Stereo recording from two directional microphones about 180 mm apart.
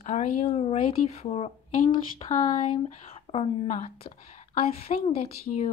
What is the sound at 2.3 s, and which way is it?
Speech, 45° left (ahead or behind).